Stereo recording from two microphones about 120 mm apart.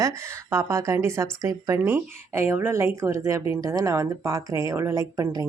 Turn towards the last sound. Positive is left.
turn(degrees=-25)  # may be behind; listen again after turning